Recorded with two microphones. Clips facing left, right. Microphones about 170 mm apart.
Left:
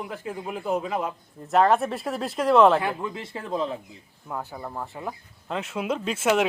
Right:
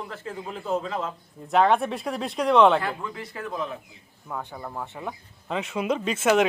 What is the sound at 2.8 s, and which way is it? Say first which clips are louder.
A man's voice: left 2 dB; 20° left (ahead or behind).